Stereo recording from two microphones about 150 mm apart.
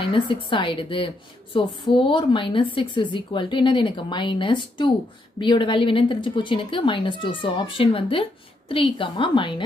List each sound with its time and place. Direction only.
0.0 s a woman's voice: 35° left (ahead or behind)